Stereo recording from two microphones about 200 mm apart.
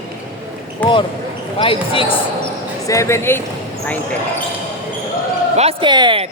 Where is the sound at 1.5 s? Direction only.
25° left (ahead or behind).